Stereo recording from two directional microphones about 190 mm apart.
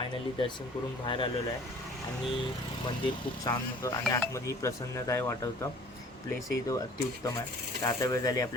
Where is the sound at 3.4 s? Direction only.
15° left (ahead or behind).